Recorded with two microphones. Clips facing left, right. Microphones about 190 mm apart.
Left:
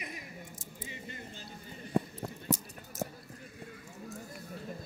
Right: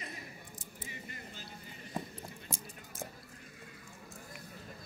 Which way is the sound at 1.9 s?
65° left (ahead or behind).